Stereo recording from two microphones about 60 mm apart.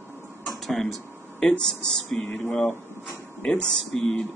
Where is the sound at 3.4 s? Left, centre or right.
Centre.